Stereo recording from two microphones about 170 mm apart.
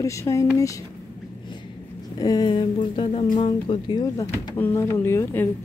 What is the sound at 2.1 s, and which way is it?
A woman's voice, 25° left (ahead or behind).